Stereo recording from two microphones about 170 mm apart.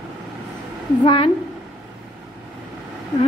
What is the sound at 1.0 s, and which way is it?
Speech, 30° left (ahead or behind).